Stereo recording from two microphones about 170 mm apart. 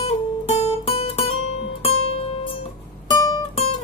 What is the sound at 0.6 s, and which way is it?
Music, 40° left (ahead or behind).